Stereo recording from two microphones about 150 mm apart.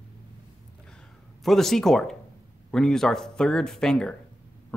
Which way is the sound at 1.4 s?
Centre (ahead or behind).